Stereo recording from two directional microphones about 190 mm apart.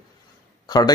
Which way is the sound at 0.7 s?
20° left (ahead or behind).